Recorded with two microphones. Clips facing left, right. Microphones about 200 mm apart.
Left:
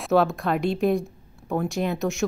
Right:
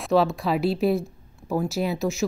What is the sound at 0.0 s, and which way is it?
Speech, centre (ahead or behind).